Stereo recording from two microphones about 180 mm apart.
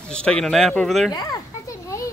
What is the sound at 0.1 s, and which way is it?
Speech, 5° left (ahead or behind).